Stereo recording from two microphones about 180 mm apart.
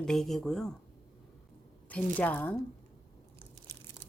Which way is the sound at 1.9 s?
10° left (ahead or behind).